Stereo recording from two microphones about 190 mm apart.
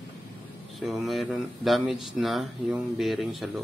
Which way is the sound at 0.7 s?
Centre (ahead or behind).